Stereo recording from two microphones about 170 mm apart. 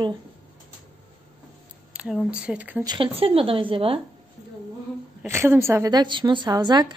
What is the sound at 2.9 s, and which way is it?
Speech, 30° right (ahead or behind).